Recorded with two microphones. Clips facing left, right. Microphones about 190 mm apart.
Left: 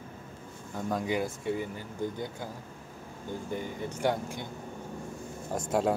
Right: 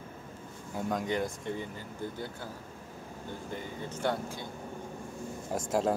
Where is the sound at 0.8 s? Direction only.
5° left (ahead or behind).